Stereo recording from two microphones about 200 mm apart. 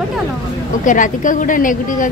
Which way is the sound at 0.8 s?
40° left (ahead or behind).